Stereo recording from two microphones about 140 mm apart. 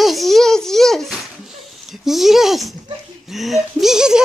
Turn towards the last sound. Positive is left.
turn(degrees=-5)  # may be behind; listen again after turning